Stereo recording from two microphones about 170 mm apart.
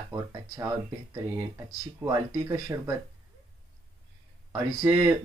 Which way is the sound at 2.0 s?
20° right (ahead or behind).